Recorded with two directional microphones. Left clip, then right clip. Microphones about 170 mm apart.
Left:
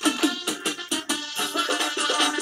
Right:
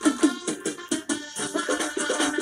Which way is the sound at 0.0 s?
35° right (ahead or behind).